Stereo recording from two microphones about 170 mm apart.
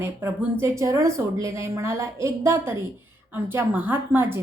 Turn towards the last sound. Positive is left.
turn(degrees=-15)  # may be behind; listen again after turning